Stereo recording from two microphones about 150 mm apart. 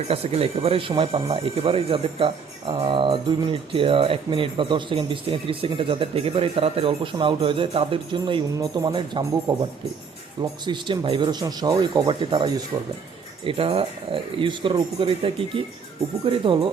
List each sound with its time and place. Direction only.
0.1 s speech: 40° right (ahead or behind)